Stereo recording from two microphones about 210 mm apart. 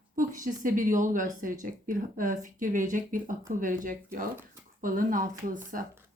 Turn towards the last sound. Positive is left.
turn(degrees=-40)  # may be behind; listen again after turning